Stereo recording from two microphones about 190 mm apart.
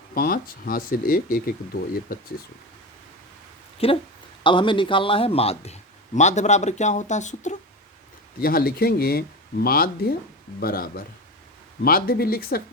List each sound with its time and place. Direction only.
0.1 s speech: 50° left (ahead or behind)
3.8 s a man's voice: 30° left (ahead or behind)
8.4 s speech: 50° left (ahead or behind)